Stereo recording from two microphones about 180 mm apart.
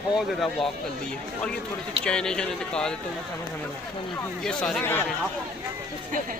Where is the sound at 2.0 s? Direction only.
5° left (ahead or behind).